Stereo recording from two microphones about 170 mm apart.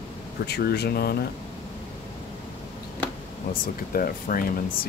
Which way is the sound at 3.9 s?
55° left (ahead or behind).